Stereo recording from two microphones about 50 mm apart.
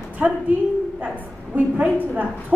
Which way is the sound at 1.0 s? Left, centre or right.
Right.